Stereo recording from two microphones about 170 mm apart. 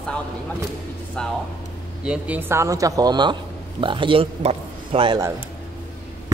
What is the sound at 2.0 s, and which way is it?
A man's voice, 5° right (ahead or behind).